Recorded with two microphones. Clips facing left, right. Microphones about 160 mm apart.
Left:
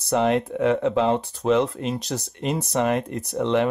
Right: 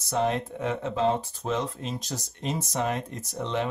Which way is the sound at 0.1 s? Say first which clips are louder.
Left 6 dB; 70° left (ahead or behind).